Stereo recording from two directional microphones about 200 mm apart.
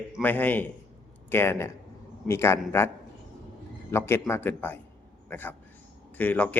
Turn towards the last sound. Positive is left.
turn(degrees=10)  # may be behind; listen again after turning